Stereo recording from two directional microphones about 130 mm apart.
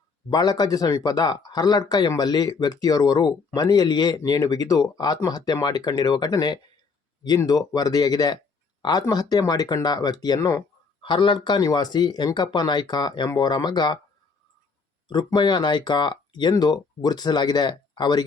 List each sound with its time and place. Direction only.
0.3 s speech: 30° left (ahead or behind)
11.0 s speech: 40° left (ahead or behind)
15.0 s speech: 35° left (ahead or behind)